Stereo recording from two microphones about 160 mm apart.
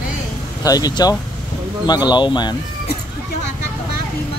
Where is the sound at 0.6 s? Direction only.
25° left (ahead or behind).